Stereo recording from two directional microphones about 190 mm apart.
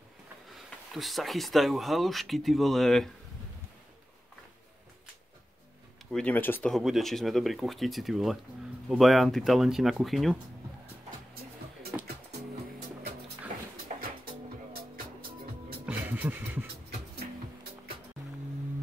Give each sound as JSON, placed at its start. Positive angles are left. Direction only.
{"t": 0.6, "sound": "speech", "side_deg": 0}
{"t": 6.1, "sound": "speech", "side_deg": 10}
{"t": 14.0, "sound": "music", "side_deg": -50}
{"t": 15.8, "sound": "music", "side_deg": -10}